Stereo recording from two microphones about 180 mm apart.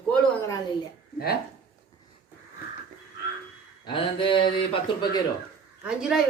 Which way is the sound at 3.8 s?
30° left (ahead or behind).